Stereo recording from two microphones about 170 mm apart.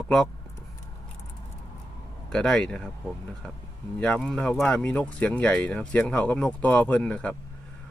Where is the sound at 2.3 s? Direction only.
5° left (ahead or behind).